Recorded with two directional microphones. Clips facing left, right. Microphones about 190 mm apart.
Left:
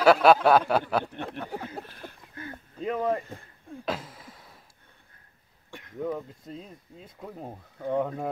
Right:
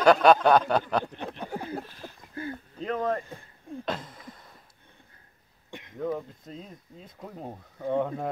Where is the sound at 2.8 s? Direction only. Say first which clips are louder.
Left 1 dB; 10° left (ahead or behind).